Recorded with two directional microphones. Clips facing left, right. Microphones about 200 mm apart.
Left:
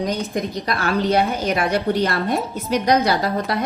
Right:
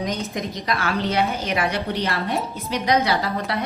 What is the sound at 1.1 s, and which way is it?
A woman's voice, 45° left (ahead or behind).